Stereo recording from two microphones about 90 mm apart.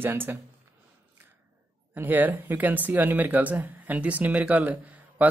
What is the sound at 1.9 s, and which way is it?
Speech, 20° right (ahead or behind).